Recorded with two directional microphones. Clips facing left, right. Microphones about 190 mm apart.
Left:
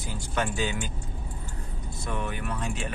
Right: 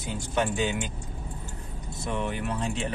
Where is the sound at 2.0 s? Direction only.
20° right (ahead or behind).